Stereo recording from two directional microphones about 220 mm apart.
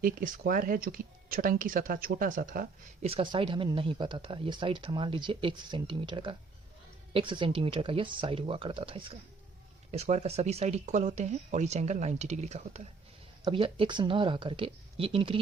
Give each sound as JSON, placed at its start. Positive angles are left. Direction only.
{"t": 0.0, "sound": "speech", "side_deg": -40}
{"t": 3.1, "sound": "speech", "side_deg": -25}